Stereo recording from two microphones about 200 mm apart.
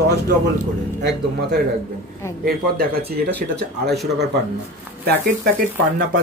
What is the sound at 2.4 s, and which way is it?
Speech, 50° right (ahead or behind).